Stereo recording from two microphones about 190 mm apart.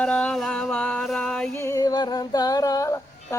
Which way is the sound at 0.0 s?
5° left (ahead or behind).